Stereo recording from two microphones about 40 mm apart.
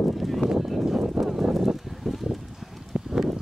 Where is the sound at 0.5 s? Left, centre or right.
Centre.